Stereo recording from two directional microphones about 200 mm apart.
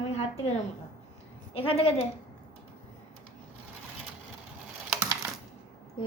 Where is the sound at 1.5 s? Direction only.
30° left (ahead or behind).